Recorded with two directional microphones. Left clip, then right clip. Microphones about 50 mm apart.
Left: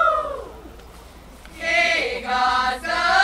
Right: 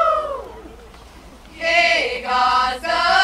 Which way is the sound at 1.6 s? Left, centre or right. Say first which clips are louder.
Right 3 dB; centre.